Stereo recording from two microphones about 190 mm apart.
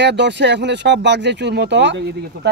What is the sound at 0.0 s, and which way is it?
Speech, 65° right (ahead or behind).